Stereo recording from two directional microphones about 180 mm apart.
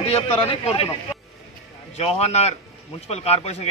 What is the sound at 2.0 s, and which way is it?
A man's voice, 35° left (ahead or behind).